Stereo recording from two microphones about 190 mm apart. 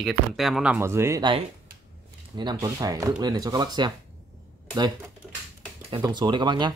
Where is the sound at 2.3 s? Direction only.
20° right (ahead or behind).